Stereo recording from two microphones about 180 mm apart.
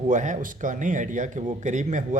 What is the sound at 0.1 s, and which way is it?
A man's voice, 45° right (ahead or behind).